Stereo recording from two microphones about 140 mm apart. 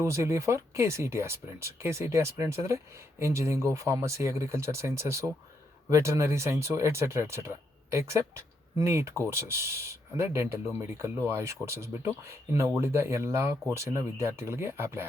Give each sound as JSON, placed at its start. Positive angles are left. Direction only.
{"t": 0.0, "sound": "speech", "side_deg": -20}